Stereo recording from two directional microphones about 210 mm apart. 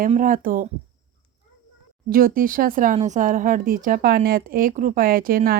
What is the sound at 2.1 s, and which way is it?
Speech, 40° right (ahead or behind).